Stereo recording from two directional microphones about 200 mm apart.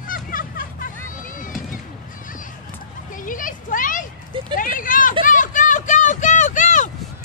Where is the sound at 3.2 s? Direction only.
40° left (ahead or behind).